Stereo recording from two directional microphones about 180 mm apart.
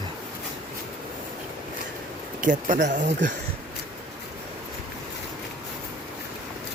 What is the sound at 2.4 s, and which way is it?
Speech, 45° right (ahead or behind).